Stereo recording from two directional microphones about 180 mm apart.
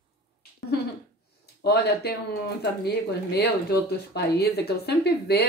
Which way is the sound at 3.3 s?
65° left (ahead or behind).